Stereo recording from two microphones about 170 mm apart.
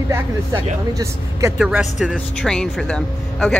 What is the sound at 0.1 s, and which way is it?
Speech, 15° right (ahead or behind).